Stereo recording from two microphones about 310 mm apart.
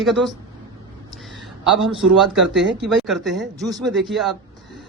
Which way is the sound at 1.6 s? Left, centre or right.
Centre.